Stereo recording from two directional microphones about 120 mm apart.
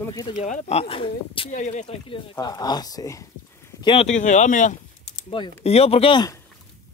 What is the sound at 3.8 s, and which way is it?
Speech, 45° left (ahead or behind).